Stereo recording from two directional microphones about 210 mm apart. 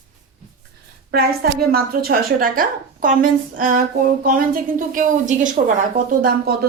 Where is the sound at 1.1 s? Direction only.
45° right (ahead or behind).